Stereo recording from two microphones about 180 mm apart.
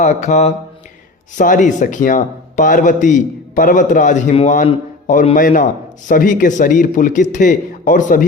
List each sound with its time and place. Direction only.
0.0 s mantra: 40° left (ahead or behind)
1.4 s a man's voice: 45° left (ahead or behind)